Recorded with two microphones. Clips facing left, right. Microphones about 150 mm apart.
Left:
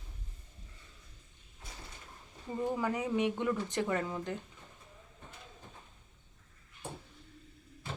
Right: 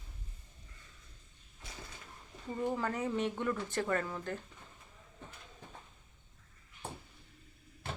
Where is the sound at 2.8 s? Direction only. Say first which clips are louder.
Left 2 dB; 10° left (ahead or behind).